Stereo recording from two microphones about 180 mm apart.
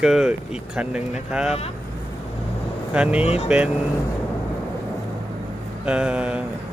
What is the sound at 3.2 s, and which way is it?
Speech, 35° left (ahead or behind).